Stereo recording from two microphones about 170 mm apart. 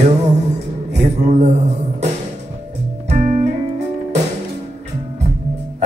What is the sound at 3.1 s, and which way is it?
Music, 45° right (ahead or behind).